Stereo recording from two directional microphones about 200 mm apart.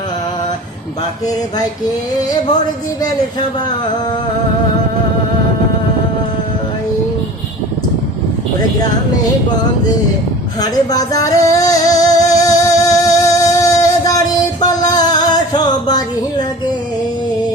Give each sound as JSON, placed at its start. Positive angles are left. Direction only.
{"t": 10.6, "sound": "music", "side_deg": 20}